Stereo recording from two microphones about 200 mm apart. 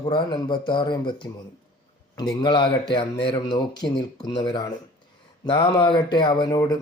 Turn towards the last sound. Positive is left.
turn(degrees=20)  # may be behind; listen again after turning